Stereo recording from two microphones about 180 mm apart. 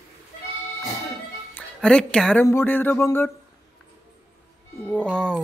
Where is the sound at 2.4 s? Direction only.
10° left (ahead or behind).